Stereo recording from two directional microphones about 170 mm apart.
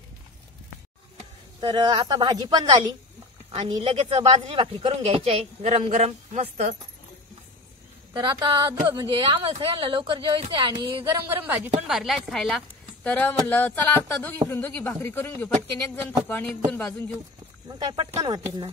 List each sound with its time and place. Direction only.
1.6 s speech: 25° right (ahead or behind); by 6.8 s 45° right (ahead or behind)
8.1 s speech: 30° right (ahead or behind)
11.2 s speech: 10° right (ahead or behind)
11.9 s a woman's voice: centre (ahead or behind)
17.6 s speech: 25° right (ahead or behind)